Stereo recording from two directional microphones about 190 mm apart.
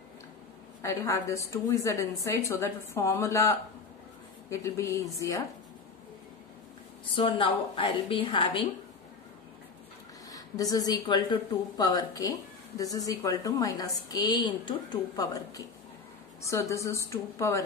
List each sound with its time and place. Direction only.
0.8 s a woman's voice: 15° left (ahead or behind)
7.2 s speech: 25° left (ahead or behind)
10.3 s a woman's voice: 20° left (ahead or behind)